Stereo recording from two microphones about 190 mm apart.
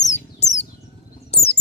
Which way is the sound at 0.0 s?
40° left (ahead or behind).